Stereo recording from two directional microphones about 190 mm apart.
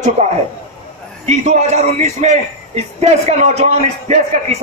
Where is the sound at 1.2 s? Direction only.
35° right (ahead or behind).